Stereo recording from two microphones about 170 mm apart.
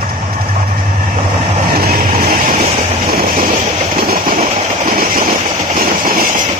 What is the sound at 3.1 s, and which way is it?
Train, 60° right (ahead or behind).